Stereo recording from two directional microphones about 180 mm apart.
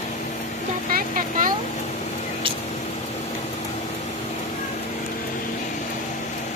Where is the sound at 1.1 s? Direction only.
50° right (ahead or behind).